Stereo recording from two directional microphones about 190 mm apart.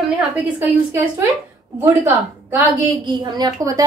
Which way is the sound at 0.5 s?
10° right (ahead or behind).